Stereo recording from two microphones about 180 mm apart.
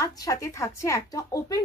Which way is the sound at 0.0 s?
20° left (ahead or behind).